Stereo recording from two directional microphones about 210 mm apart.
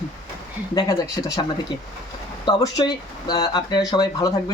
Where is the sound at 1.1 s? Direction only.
15° left (ahead or behind).